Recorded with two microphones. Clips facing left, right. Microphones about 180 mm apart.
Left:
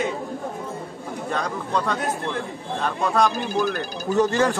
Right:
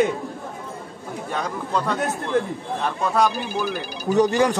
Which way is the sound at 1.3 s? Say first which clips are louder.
Even; 5° right (ahead or behind).